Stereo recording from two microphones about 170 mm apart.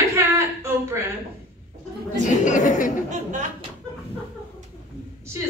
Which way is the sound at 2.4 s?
50° left (ahead or behind).